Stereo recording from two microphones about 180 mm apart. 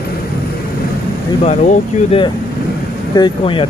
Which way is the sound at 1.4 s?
40° left (ahead or behind).